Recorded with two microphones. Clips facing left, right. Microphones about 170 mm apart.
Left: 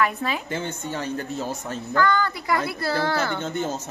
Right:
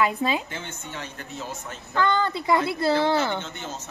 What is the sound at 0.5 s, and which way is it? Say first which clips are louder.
Speech: left 8 dB; 40° left (ahead or behind).